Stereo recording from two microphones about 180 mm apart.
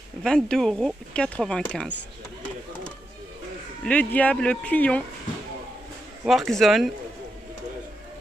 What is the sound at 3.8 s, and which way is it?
Speech, 10° left (ahead or behind).